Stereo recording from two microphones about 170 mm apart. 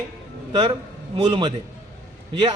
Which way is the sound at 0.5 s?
30° right (ahead or behind).